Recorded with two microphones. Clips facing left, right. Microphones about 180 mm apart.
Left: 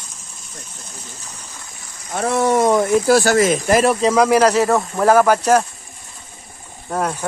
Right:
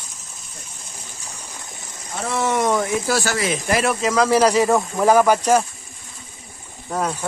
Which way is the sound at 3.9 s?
30° left (ahead or behind).